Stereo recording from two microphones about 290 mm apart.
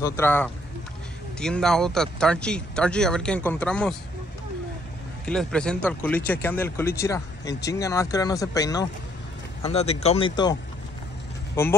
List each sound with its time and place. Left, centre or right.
0.0 s speech: centre
5.2 s speech: centre